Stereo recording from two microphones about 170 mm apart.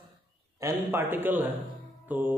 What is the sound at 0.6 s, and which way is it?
A man's voice, 15° right (ahead or behind).